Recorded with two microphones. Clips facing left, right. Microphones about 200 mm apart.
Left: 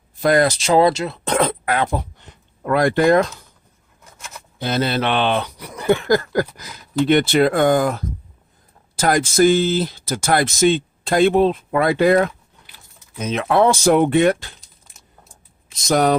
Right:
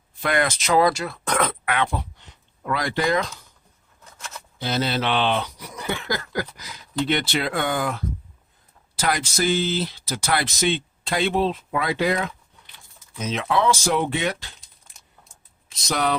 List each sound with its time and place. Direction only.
0.2 s speech: 35° left (ahead or behind); by 3.2 s 55° left (ahead or behind)
4.6 s speech: 55° left (ahead or behind)
15.9 s speech: 45° left (ahead or behind)